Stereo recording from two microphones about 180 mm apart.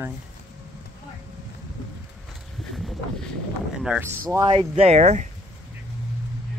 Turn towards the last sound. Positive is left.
turn(degrees=-40)  # may be behind; listen again after turning